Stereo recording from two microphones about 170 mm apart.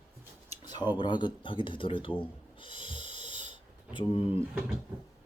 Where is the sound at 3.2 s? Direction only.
30° left (ahead or behind).